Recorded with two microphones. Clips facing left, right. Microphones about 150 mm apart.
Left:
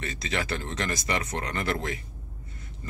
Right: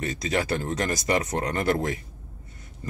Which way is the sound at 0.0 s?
40° right (ahead or behind).